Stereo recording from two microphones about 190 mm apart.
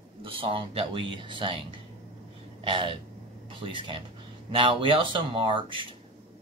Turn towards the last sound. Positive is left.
turn(degrees=-25)  # may be behind; listen again after turning